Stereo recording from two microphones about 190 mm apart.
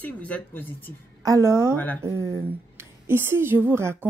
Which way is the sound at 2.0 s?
15° right (ahead or behind).